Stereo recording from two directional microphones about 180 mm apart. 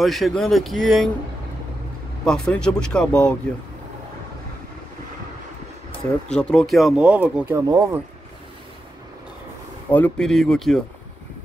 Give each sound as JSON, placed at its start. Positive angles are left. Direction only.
{"t": 0.0, "sound": "speech", "side_deg": 0}
{"t": 2.2, "sound": "speech", "side_deg": 5}
{"t": 6.2, "sound": "speech", "side_deg": 5}
{"t": 7.6, "sound": "speech", "side_deg": -20}
{"t": 9.8, "sound": "speech", "side_deg": 10}